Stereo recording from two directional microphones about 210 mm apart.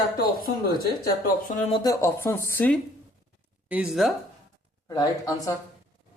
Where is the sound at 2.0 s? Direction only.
10° left (ahead or behind).